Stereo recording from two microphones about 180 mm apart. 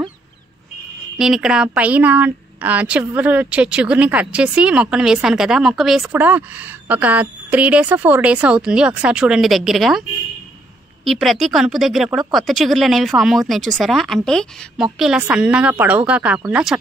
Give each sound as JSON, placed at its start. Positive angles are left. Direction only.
{"t": 1.1, "sound": "a woman's voice", "side_deg": 0}
{"t": 11.1, "sound": "a woman's voice", "side_deg": 0}